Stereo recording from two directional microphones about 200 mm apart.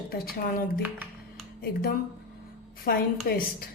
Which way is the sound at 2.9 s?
50° left (ahead or behind).